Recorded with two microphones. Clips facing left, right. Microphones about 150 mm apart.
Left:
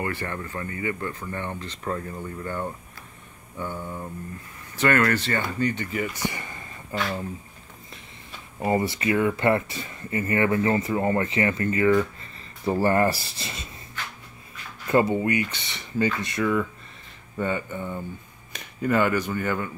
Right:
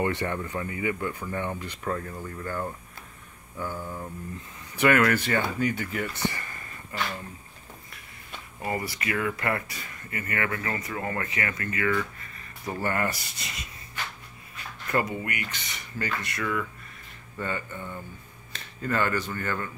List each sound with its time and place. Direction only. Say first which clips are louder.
0.0 s speech: right 3 dB; 20° right (ahead or behind)
1.9 s speech: left 1 dB; 5° left (ahead or behind)
6.2 s a sound: even; 20° left (ahead or behind)
8.5 s speech: left 7 dB; 25° left (ahead or behind)
14.9 s speech: left 7 dB; 25° left (ahead or behind)